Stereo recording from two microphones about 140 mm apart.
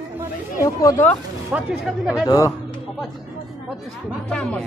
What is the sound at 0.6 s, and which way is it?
Speech, 25° left (ahead or behind).